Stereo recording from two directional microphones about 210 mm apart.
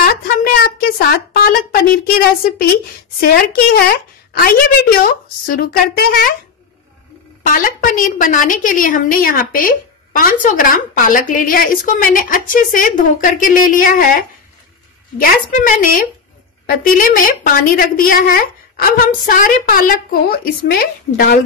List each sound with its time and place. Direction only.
0.0 s a sound: 45° left (ahead or behind)
3.2 s a woman's voice: 45° left (ahead or behind)
7.4 s a woman's voice: 40° left (ahead or behind)
15.5 s a woman's voice: 40° left (ahead or behind)